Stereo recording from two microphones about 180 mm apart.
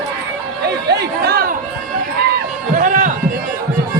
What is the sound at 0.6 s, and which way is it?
Chatter, 65° right (ahead or behind).